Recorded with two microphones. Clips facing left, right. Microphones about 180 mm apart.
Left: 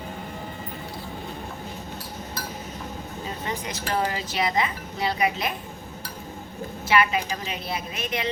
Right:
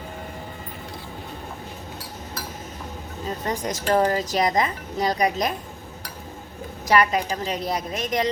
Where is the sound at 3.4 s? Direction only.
45° right (ahead or behind).